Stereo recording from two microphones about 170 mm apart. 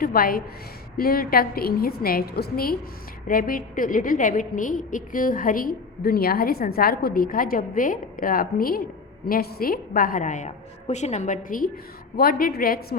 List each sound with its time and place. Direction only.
0.0 s a woman's voice: 60° left (ahead or behind)